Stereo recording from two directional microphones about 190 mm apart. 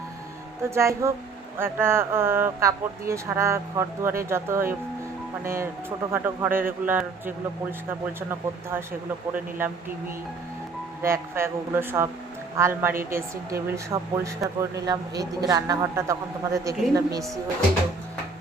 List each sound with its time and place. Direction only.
0.7 s speech: 15° right (ahead or behind)
11.0 s speech: 15° right (ahead or behind)